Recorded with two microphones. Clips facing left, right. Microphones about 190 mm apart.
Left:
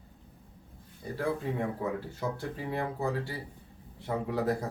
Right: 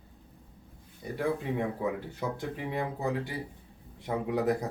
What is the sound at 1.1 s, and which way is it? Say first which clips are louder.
Speech: right 1 dB; 15° right (ahead or behind).